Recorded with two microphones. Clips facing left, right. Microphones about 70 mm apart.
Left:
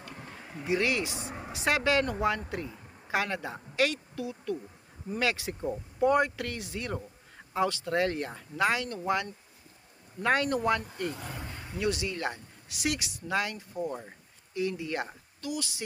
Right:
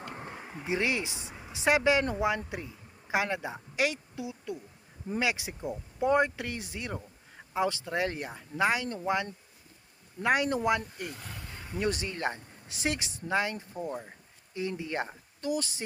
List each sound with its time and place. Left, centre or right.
0.0 s a sound: right
1.3 s vehicle: left
1.5 s a woman's voice: centre
11.8 s a woman's voice: right